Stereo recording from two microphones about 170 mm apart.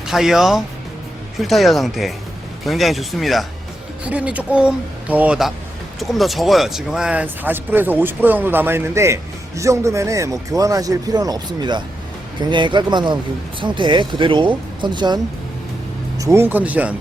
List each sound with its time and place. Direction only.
0.0 s speech: centre (ahead or behind)